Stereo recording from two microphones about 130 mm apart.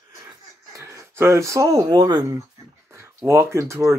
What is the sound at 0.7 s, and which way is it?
Speech, 20° right (ahead or behind).